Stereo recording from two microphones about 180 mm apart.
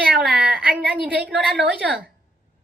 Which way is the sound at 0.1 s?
5° right (ahead or behind).